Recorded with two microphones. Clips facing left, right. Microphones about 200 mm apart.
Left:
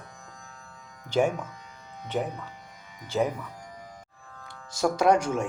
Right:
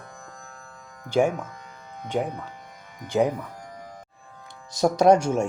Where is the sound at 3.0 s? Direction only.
15° right (ahead or behind).